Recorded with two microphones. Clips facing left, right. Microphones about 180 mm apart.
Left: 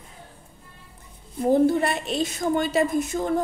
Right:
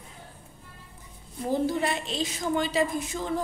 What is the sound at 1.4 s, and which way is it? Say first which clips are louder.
A woman's voice: left 7 dB; 55° left (ahead or behind).